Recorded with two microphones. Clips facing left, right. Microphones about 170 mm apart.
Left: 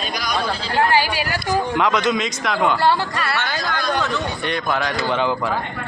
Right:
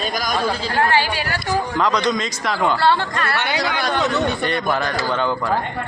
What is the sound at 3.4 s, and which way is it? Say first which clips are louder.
Speech: right 4 dB; 70° right (ahead or behind).